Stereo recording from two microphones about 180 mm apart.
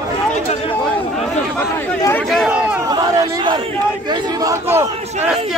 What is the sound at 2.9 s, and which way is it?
Crowd, 20° right (ahead or behind).